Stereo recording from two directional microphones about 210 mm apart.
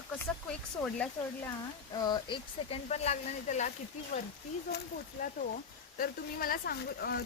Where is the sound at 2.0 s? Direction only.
20° left (ahead or behind).